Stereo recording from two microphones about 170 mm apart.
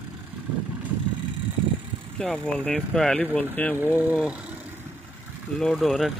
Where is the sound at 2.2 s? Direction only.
5° left (ahead or behind).